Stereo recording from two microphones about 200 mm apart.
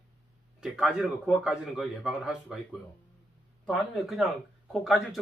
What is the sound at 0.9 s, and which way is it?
Speech, 5° right (ahead or behind).